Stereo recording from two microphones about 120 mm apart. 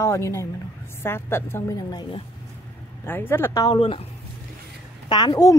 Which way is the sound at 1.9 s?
40° left (ahead or behind).